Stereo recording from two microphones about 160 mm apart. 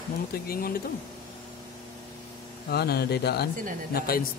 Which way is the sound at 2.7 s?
90° left.